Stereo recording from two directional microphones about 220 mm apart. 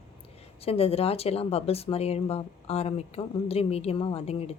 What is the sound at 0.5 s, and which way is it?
Speech, 25° left (ahead or behind).